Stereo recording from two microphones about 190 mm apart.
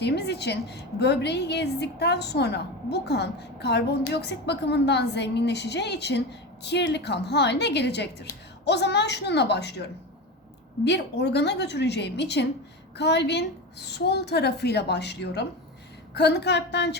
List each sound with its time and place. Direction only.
0.0 s a woman's voice: 60° left (ahead or behind)